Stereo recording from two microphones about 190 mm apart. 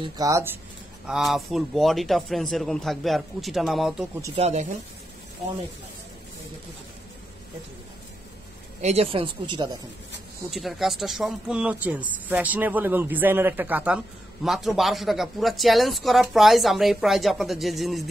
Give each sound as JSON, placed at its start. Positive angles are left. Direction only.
{"t": 0.0, "sound": "speech", "side_deg": -15}
{"t": 1.0, "sound": "speech", "side_deg": 0}
{"t": 4.4, "sound": "speech", "side_deg": -35}
{"t": 8.8, "sound": "speech", "side_deg": -30}
{"t": 10.5, "sound": "speech", "side_deg": 0}